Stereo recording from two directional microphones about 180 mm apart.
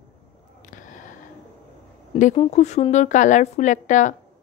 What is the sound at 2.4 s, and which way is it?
A woman's voice, 40° left (ahead or behind).